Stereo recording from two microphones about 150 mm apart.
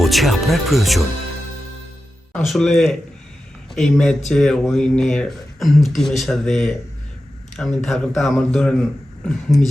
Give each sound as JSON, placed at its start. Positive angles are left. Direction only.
{"t": 0.0, "sound": "speech", "side_deg": 0}
{"t": 2.3, "sound": "speech", "side_deg": 0}
{"t": 9.5, "sound": "speech", "side_deg": 20}